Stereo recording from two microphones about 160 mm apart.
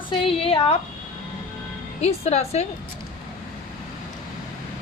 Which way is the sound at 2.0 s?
40° left (ahead or behind).